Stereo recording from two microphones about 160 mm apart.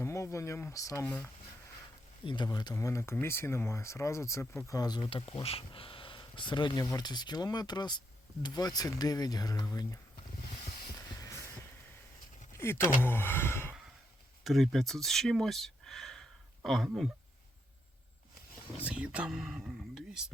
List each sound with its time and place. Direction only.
0.0 s speech: 15° left (ahead or behind)
1.0 s speech: 10° left (ahead or behind)
2.2 s speech: 30° left (ahead or behind)
12.5 s speech: 15° left (ahead or behind)
14.4 s speech: centre (ahead or behind)
16.6 s a sound: centre (ahead or behind)
18.9 s speech: 5° right (ahead or behind)